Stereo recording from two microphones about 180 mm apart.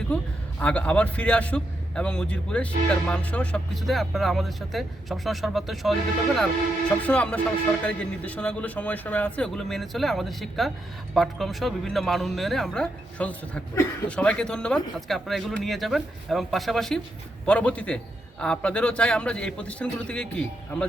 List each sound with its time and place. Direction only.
0.6 s a man's voice: 5° left (ahead or behind)